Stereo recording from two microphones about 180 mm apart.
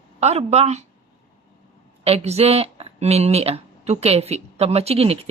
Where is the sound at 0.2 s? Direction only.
35° right (ahead or behind).